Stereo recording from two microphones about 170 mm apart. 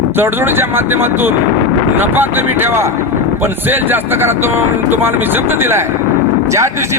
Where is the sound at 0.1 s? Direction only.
15° right (ahead or behind).